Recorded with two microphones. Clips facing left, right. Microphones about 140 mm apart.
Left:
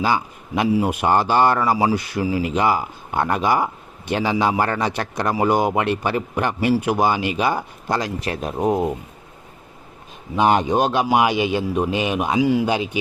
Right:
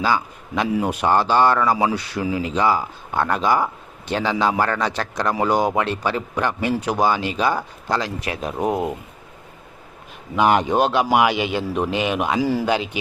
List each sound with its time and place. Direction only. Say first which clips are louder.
0.0 s a man's voice: even; 15° left (ahead or behind)
1.9 s speech: left 3 dB; 45° left (ahead or behind)
2.6 s a man's voice: right 2 dB; 15° left (ahead or behind)
8.0 s speech: left 2 dB; 35° left (ahead or behind)
8.4 s speech: left 1 dB; 5° left (ahead or behind)
8.6 s speech: left 2 dB; 15° right (ahead or behind)
10.3 s a man's voice: even; 20° left (ahead or behind)